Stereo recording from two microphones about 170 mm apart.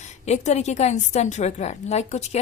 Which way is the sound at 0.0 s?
40° left (ahead or behind).